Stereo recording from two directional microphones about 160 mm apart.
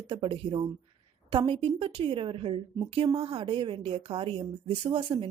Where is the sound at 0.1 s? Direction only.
30° right (ahead or behind).